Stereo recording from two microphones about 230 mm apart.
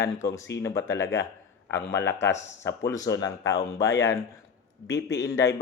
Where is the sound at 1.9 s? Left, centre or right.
Centre.